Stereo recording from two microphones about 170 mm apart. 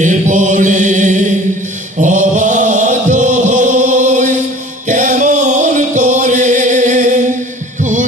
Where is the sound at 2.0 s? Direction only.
45° right (ahead or behind).